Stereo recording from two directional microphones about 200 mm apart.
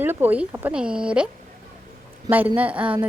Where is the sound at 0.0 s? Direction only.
10° right (ahead or behind).